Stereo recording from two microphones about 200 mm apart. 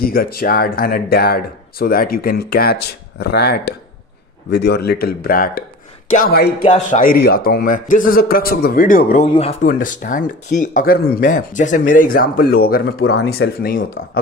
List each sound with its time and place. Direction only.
0.0 s speech: 45° left (ahead or behind)
9.3 s speech: 30° left (ahead or behind)
9.7 s speech: 45° left (ahead or behind)